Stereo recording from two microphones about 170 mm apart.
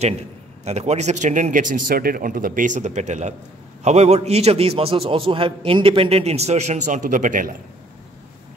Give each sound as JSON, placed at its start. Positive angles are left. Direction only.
{"t": 0.7, "sound": "a man's voice", "side_deg": -40}